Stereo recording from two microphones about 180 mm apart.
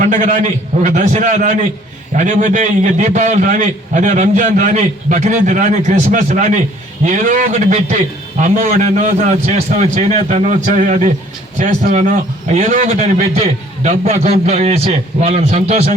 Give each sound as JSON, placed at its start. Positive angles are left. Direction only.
{"t": 0.0, "sound": "a man's voice", "side_deg": -40}